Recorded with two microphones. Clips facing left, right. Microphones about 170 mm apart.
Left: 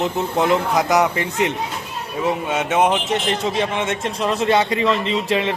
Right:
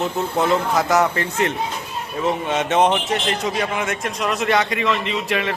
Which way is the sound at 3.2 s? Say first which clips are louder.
Left 2 dB; 25° left (ahead or behind).